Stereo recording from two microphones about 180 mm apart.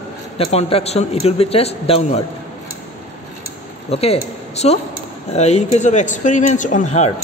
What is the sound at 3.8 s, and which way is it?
Speech, 35° left (ahead or behind).